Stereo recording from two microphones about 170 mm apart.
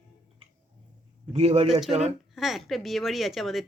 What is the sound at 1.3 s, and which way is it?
Speech, 40° right (ahead or behind).